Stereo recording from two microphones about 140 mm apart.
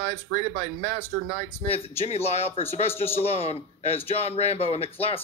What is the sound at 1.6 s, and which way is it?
Speech, 45° left (ahead or behind).